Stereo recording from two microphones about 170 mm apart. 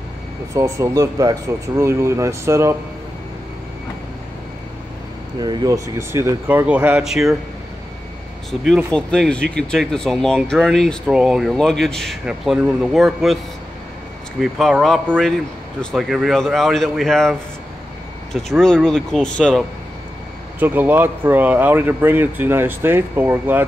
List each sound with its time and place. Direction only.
0.6 s speech: 20° right (ahead or behind)
5.4 s speech: 25° right (ahead or behind); by 7.3 s centre (ahead or behind)
8.5 s speech: centre (ahead or behind)
14.4 s speech: centre (ahead or behind)
20.5 s speech: 10° right (ahead or behind)